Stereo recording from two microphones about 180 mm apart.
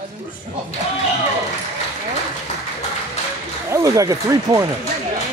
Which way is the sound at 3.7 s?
15° right (ahead or behind).